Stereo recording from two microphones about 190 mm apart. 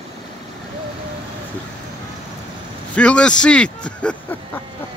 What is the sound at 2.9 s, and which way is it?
A man's voice, 5° left (ahead or behind).